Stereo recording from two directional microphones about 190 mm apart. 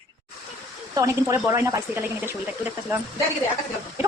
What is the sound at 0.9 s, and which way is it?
Speech, 15° right (ahead or behind).